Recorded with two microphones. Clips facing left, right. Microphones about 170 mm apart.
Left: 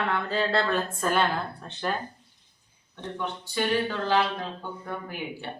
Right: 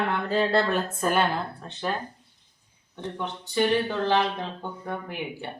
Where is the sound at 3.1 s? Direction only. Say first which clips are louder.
Right 3 dB; 20° right (ahead or behind).